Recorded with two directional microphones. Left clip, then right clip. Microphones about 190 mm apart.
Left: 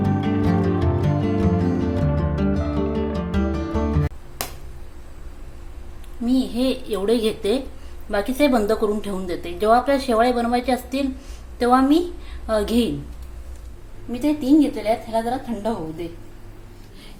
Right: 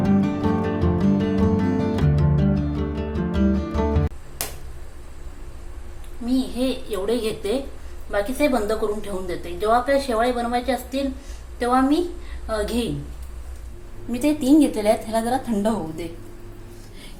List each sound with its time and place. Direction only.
0.0 s music: centre (ahead or behind)
6.2 s a woman's voice: 30° left (ahead or behind)
14.1 s a woman's voice: 15° right (ahead or behind)